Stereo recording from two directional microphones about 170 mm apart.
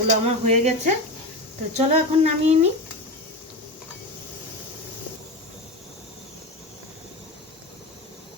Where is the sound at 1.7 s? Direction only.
40° right (ahead or behind).